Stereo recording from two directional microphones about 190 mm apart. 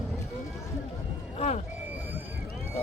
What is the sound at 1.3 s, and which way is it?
Vehicle, 35° left (ahead or behind).